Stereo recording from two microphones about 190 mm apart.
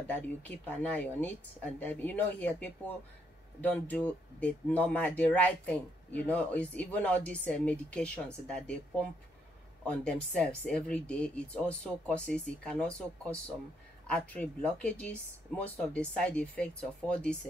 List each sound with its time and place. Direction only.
0.0 s speech: 10° left (ahead or behind)